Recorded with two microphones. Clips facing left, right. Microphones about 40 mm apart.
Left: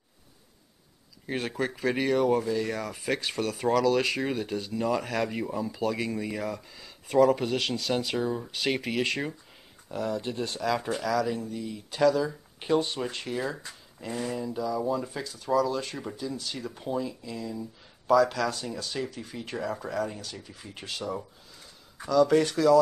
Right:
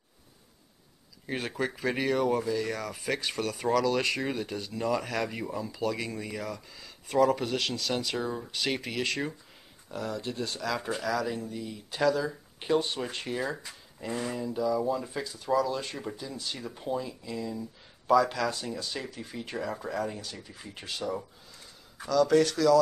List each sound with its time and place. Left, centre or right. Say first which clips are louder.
1.2 s speech: left 2 dB; centre
22.1 s speech: left 1 dB; centre